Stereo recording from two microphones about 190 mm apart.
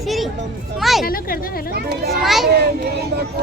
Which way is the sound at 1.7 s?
55° right (ahead or behind).